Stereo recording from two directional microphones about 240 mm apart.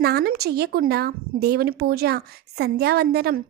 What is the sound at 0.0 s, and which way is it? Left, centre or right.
Speech, right.